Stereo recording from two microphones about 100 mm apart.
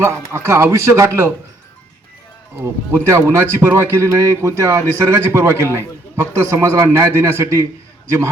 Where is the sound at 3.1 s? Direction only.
30° right (ahead or behind).